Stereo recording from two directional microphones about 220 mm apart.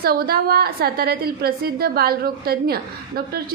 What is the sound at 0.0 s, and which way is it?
A woman's voice, 45° right (ahead or behind).